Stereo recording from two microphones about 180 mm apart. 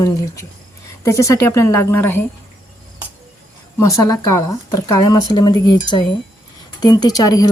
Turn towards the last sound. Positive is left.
turn(degrees=20)  # may be behind; listen again after turning